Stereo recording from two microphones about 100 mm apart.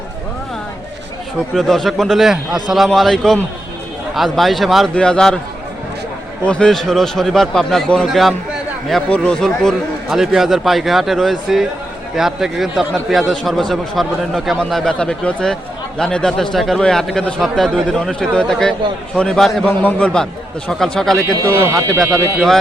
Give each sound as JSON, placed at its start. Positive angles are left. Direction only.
{"t": 1.5, "sound": "a man's voice", "side_deg": 5}
{"t": 6.4, "sound": "a man's voice", "side_deg": 10}
{"t": 21.5, "sound": "speech", "side_deg": -25}
{"t": 22.0, "sound": "a man's voice", "side_deg": 0}